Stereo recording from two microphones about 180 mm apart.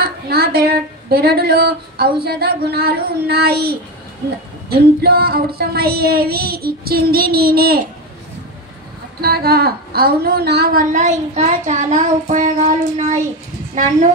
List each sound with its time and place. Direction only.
0.0 s speech: 60° right (ahead or behind)
2.2 s child singing: 60° right (ahead or behind)
9.2 s a woman's voice: 60° right (ahead or behind); by 13.2 s 40° right (ahead or behind)